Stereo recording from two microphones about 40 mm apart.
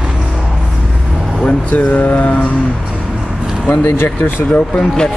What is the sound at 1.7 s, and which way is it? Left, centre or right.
Mantra, left.